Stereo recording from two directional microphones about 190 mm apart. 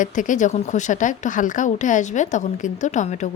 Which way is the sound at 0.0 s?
40° left (ahead or behind).